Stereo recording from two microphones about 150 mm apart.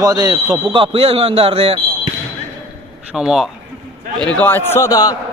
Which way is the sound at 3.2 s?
5° right (ahead or behind).